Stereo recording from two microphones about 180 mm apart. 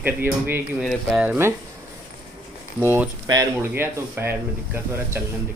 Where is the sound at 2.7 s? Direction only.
10° right (ahead or behind).